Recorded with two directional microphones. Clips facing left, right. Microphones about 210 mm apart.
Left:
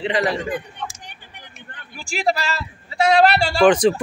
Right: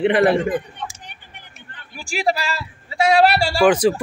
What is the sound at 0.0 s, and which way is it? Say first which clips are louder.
Speech: right 6 dB; 55° right (ahead or behind).